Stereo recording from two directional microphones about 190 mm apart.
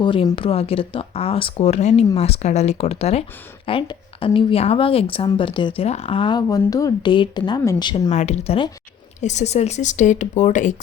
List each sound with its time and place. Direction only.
0.0 s a woman's voice: 25° left (ahead or behind)
8.1 s speech: 35° left (ahead or behind)